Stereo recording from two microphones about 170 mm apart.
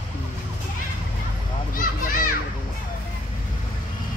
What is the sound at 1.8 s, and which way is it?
Speech, 55° left (ahead or behind).